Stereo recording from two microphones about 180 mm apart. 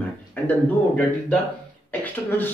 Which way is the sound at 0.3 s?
10° left (ahead or behind).